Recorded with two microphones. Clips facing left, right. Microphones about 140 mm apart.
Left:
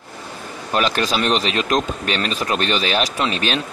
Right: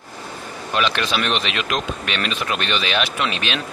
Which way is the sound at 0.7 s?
40° left (ahead or behind).